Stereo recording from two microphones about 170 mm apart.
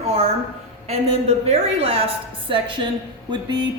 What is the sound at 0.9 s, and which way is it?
A woman's voice, 35° right (ahead or behind).